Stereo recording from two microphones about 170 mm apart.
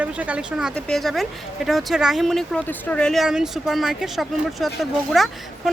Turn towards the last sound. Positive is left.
turn(degrees=0)  # may be behind; listen again after turning